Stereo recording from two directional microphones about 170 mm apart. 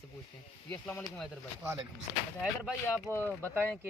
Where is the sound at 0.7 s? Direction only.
10° left (ahead or behind).